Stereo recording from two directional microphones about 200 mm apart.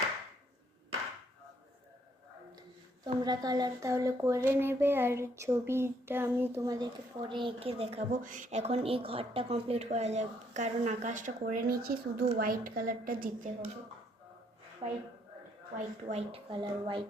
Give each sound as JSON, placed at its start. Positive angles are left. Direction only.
{"t": 3.2, "sound": "speech", "side_deg": -20}
{"t": 14.8, "sound": "a woman's voice", "side_deg": -30}